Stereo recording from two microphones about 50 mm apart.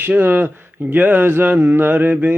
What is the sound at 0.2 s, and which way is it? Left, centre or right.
Speech, right.